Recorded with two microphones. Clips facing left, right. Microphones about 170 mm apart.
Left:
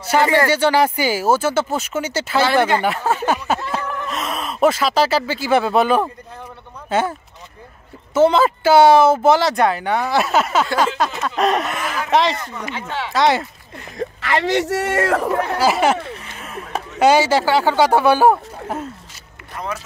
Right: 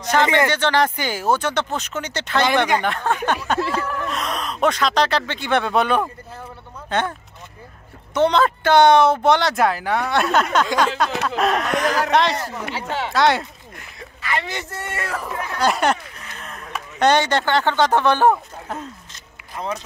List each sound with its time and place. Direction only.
0.0 s speech: 10° left (ahead or behind)
12.7 s speech: 40° right (ahead or behind)
13.1 s speech: centre (ahead or behind)
14.2 s a man's voice: 90° left; by 15.5 s 65° left (ahead or behind)
15.5 s speech: 5° left (ahead or behind)
16.3 s a sound: 10° left (ahead or behind)
17.0 s speech: 5° left (ahead or behind)